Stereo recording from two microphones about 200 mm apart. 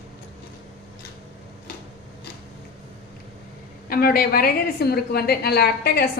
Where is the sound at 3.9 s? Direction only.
50° left (ahead or behind).